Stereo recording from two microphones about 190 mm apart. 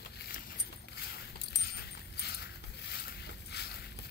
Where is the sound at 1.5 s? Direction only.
55° left (ahead or behind).